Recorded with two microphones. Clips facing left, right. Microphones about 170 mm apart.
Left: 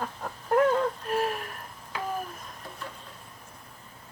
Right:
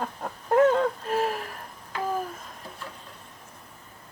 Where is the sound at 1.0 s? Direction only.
25° right (ahead or behind).